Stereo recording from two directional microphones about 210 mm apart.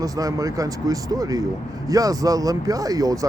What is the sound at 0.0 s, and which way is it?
Speech, 15° right (ahead or behind).